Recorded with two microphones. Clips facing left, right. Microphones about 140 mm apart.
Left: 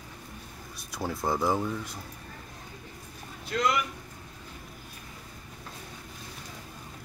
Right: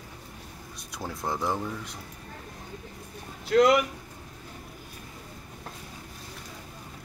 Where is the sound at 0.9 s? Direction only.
5° left (ahead or behind).